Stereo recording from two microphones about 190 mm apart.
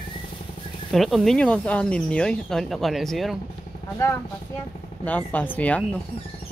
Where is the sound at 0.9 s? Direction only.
Centre (ahead or behind).